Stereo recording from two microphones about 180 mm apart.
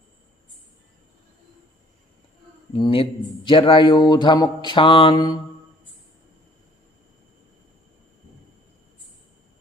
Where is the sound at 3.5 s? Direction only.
30° left (ahead or behind).